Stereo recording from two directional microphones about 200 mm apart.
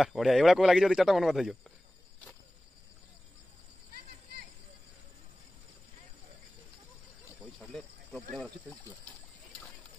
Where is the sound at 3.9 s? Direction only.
50° right (ahead or behind).